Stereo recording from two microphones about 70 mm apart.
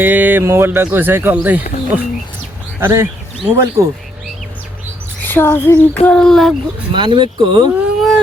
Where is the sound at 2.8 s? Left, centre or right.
Right.